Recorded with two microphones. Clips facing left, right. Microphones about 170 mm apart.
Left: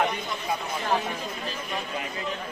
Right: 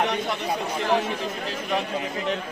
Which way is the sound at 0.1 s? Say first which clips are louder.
Right 4 dB; 85° right.